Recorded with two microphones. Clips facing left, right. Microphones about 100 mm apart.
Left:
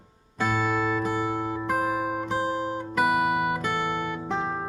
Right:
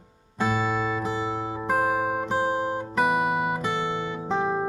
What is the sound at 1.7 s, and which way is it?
Guitar, 50° right (ahead or behind).